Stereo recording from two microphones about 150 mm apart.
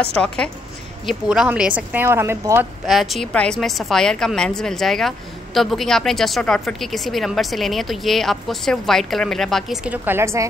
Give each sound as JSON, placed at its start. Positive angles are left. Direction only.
{"t": 0.0, "sound": "a woman's voice", "side_deg": 5}
{"t": 2.9, "sound": "a woman's voice", "side_deg": 0}
{"t": 9.8, "sound": "speech", "side_deg": -15}